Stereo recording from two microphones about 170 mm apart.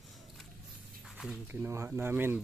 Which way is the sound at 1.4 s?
10° right (ahead or behind).